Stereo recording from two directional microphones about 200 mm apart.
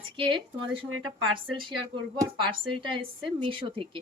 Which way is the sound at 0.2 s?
25° right (ahead or behind).